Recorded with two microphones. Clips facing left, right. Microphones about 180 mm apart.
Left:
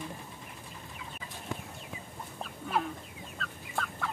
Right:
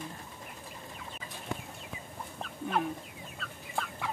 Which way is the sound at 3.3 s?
10° right (ahead or behind).